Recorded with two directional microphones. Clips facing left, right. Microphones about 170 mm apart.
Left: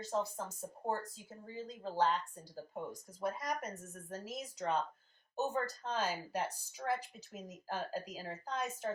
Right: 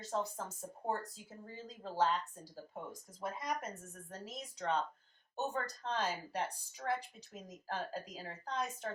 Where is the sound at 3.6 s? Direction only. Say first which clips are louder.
Left 1 dB; centre (ahead or behind).